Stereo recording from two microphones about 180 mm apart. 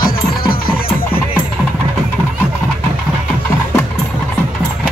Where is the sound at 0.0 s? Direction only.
55° left (ahead or behind).